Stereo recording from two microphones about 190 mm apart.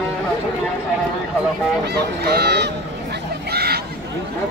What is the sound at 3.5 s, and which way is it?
Chatter, 55° right (ahead or behind).